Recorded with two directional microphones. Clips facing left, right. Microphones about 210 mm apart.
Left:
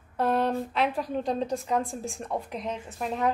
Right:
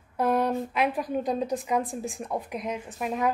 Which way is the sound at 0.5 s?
15° right (ahead or behind).